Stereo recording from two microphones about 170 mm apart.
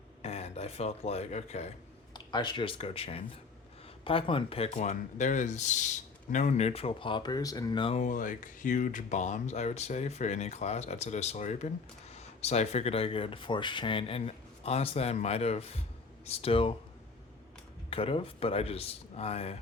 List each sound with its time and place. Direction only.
0.2 s speech: 40° left (ahead or behind)
2.1 s speech: 25° left (ahead or behind)
7.9 s speech: 50° left (ahead or behind); by 16.7 s 35° left (ahead or behind)
17.9 s speech: 35° left (ahead or behind)